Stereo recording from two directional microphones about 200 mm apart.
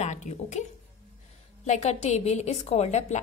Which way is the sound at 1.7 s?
35° left (ahead or behind).